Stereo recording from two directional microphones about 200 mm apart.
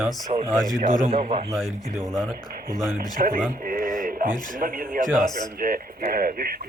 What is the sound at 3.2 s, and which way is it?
Speech, 40° right (ahead or behind).